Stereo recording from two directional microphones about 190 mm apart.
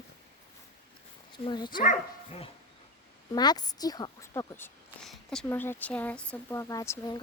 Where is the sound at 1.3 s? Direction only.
25° left (ahead or behind).